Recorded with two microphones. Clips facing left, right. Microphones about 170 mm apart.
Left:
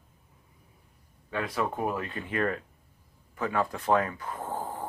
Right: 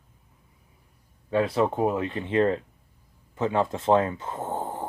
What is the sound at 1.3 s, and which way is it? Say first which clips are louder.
Speech: right 8 dB; 30° right (ahead or behind).